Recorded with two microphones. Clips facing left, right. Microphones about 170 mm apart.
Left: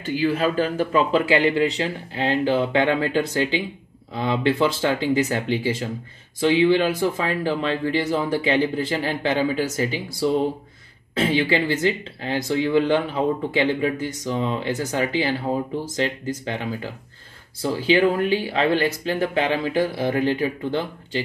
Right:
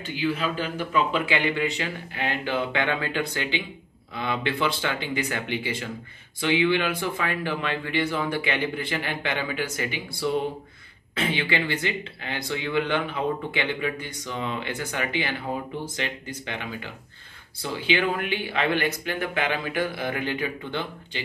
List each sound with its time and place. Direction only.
0.0 s speech: 45° left (ahead or behind)
14.4 s speech: 30° left (ahead or behind)
14.7 s speech: 40° left (ahead or behind)